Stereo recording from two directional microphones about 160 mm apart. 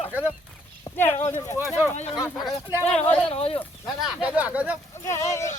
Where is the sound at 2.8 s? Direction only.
40° left (ahead or behind).